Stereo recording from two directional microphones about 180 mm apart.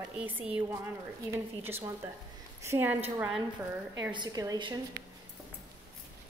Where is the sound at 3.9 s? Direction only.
25° right (ahead or behind).